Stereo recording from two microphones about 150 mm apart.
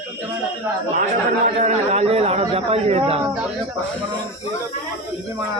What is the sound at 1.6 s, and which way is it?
A man's voice, 45° right (ahead or behind).